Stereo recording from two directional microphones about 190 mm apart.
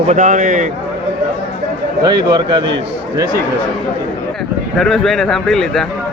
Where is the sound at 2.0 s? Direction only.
25° right (ahead or behind).